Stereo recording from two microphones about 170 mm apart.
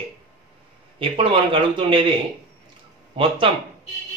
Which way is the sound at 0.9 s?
30° right (ahead or behind).